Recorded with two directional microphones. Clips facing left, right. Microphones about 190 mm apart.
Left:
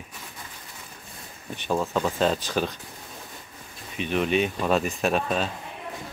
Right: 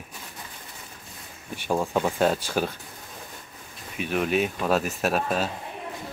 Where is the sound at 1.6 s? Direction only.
10° right (ahead or behind).